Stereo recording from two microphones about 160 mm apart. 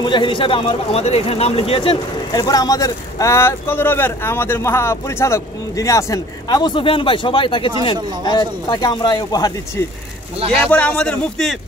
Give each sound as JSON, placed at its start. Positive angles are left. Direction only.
{"t": 0.0, "sound": "a man's voice", "side_deg": 30}
{"t": 10.7, "sound": "speech", "side_deg": 10}